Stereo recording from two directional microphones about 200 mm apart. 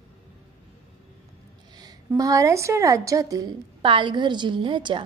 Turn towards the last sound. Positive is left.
turn(degrees=-25)  # may be behind; listen again after turning